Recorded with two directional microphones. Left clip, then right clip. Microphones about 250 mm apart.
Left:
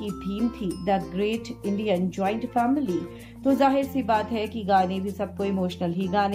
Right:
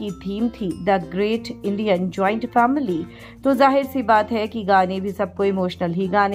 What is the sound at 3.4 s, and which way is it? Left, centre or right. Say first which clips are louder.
A woman's voice: right 5 dB; centre.